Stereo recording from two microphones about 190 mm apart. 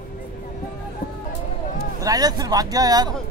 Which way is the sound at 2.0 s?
20° right (ahead or behind).